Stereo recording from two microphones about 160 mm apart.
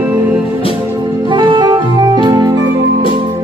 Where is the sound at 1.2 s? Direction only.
30° right (ahead or behind).